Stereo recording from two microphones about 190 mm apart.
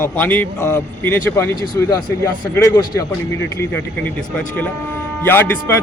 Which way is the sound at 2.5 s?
15° left (ahead or behind).